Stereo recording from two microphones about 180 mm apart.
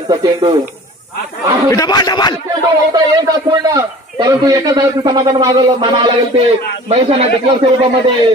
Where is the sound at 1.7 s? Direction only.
20° left (ahead or behind).